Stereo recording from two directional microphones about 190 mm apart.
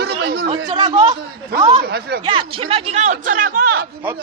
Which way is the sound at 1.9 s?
55° right (ahead or behind).